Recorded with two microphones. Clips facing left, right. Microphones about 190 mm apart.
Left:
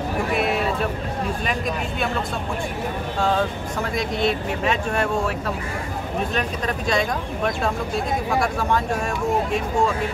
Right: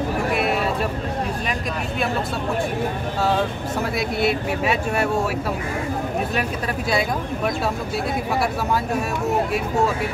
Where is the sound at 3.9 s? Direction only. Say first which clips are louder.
Even; 10° right (ahead or behind).